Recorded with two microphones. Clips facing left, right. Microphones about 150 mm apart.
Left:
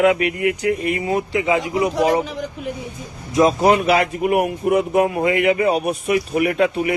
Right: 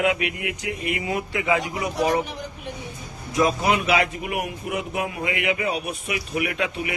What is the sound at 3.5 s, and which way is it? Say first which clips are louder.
A man's voice: left 7 dB; 40° left (ahead or behind).